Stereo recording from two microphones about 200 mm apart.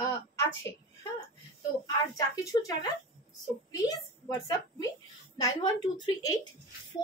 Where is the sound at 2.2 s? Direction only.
15° left (ahead or behind).